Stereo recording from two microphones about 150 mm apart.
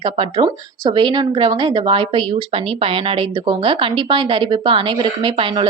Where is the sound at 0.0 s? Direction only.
35° right (ahead or behind).